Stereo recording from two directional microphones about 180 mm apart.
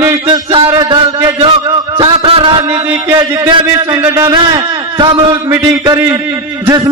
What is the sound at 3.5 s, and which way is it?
A man's voice, 15° right (ahead or behind).